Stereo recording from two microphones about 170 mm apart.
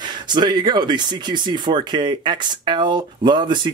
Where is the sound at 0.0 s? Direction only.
25° right (ahead or behind).